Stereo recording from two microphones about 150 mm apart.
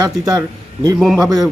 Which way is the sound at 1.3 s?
Centre (ahead or behind).